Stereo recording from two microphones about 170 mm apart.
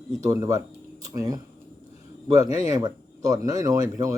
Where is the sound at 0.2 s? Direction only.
20° right (ahead or behind).